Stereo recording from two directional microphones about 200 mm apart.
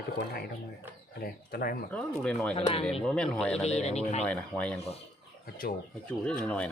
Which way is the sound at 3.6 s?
30° left (ahead or behind).